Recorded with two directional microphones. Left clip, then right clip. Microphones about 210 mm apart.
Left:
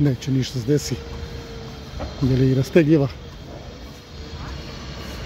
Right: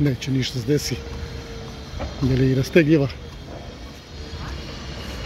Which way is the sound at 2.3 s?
15° left (ahead or behind).